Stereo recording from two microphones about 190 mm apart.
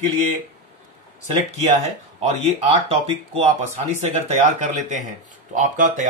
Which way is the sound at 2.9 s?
35° right (ahead or behind).